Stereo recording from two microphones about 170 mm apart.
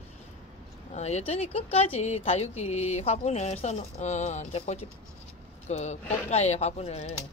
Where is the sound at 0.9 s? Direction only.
40° left (ahead or behind).